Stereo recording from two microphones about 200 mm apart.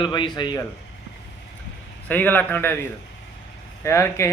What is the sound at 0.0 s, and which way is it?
Speech, 25° left (ahead or behind).